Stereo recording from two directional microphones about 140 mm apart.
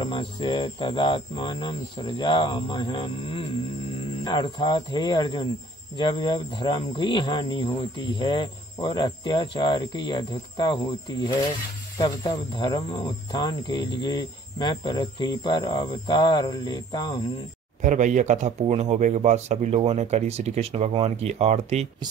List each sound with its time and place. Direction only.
0.0 s speech: 35° left (ahead or behind)
17.8 s speech: 60° right (ahead or behind)